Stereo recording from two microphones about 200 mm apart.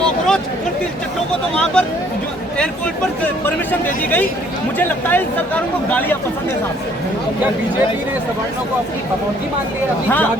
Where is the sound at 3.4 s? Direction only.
10° left (ahead or behind).